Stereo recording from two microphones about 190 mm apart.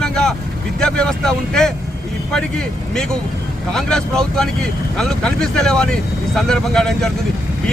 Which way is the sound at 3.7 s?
5° left (ahead or behind).